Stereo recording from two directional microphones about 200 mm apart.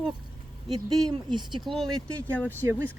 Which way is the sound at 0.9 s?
25° right (ahead or behind).